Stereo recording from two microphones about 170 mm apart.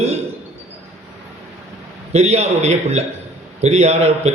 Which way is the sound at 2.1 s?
40° right (ahead or behind).